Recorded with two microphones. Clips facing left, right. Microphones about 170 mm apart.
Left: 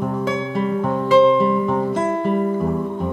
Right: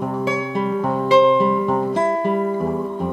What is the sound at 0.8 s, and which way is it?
Music, 5° right (ahead or behind).